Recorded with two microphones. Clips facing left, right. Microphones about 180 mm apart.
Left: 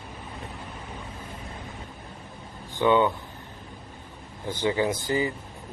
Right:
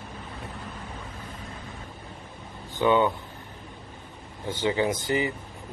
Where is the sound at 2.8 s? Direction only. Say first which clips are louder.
Left 1 dB; 15° right (ahead or behind).